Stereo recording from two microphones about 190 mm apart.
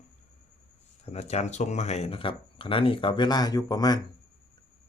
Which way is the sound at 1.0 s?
35° left (ahead or behind).